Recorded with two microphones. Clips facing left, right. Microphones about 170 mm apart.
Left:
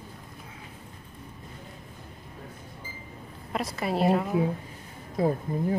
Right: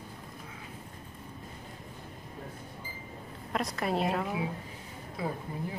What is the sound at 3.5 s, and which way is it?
Speech, 5° left (ahead or behind).